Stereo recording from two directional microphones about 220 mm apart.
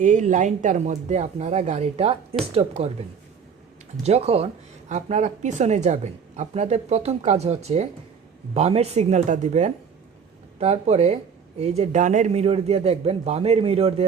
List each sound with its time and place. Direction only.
0.0 s a man's voice: 35° right (ahead or behind)
4.0 s a man's voice: 30° right (ahead or behind)